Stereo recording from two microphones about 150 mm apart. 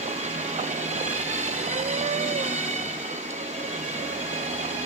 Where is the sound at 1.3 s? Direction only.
50° right (ahead or behind).